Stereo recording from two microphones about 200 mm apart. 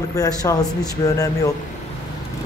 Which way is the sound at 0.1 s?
15° left (ahead or behind).